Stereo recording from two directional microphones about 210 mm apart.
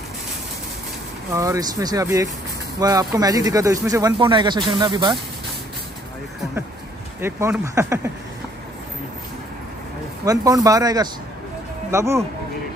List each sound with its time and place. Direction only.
1.3 s speech: 15° right (ahead or behind)
7.2 s speech: 10° right (ahead or behind)
10.2 s speech: 15° right (ahead or behind)